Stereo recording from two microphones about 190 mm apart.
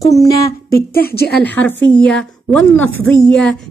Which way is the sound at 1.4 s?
10° left (ahead or behind).